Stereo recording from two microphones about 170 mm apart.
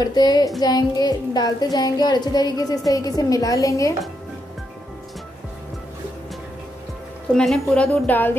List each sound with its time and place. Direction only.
0.0 s speech: 25° left (ahead or behind)
7.3 s a woman's voice: 5° left (ahead or behind)